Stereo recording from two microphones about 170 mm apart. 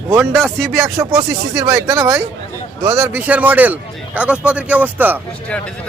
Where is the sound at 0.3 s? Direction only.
Centre (ahead or behind).